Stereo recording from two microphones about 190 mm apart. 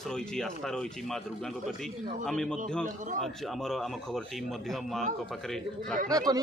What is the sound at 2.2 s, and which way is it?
Speech, 5° left (ahead or behind).